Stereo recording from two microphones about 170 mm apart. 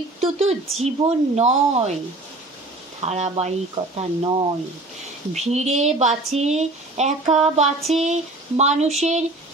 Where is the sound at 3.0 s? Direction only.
40° right (ahead or behind).